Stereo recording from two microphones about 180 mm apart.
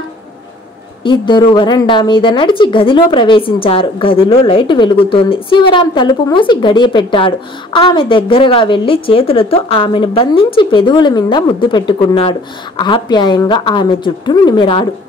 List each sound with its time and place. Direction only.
1.0 s a woman's voice: 25° left (ahead or behind)